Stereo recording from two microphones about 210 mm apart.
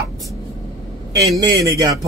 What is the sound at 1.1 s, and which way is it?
Speech, 15° right (ahead or behind).